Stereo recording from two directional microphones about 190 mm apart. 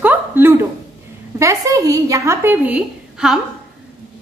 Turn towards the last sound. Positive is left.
turn(degrees=-5)  # may be behind; listen again after turning